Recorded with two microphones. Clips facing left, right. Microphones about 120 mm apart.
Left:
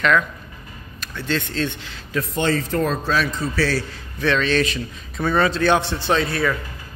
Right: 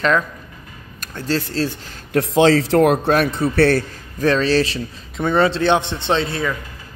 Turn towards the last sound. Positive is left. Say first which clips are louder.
# even
turn(degrees=-25)  # may be behind; listen again after turning